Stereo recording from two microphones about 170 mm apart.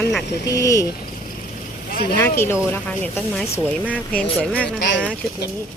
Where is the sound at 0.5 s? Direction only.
20° left (ahead or behind).